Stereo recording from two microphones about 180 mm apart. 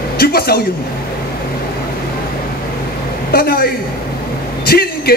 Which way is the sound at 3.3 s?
55° left (ahead or behind).